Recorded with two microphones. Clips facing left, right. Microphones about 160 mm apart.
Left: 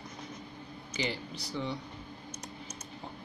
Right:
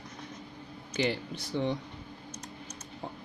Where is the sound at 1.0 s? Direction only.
55° right (ahead or behind).